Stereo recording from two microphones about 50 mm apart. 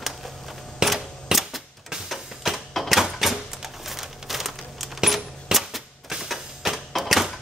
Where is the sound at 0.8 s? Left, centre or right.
Centre.